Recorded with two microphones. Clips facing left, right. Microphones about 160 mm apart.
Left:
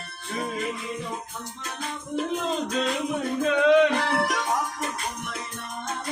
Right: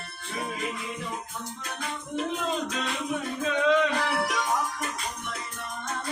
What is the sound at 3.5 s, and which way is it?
Music, 60° left (ahead or behind).